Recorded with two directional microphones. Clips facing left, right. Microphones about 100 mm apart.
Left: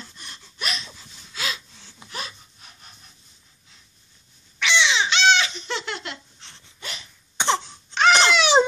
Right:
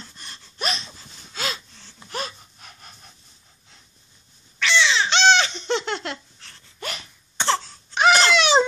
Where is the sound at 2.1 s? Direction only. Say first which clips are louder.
Right 5 dB; 50° right (ahead or behind).